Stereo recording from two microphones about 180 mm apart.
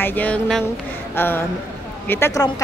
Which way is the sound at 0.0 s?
10° left (ahead or behind).